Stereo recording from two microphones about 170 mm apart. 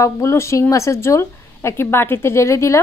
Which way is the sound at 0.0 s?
15° left (ahead or behind).